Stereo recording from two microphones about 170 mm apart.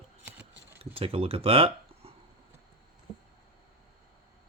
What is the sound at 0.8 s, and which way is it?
Speech, 35° right (ahead or behind).